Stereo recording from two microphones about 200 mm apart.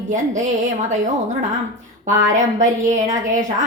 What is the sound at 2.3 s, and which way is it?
A woman's voice, 35° right (ahead or behind).